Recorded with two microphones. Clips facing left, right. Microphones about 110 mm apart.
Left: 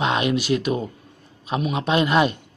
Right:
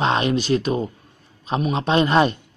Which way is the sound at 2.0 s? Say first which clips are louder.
Right 2 dB; 35° right (ahead or behind).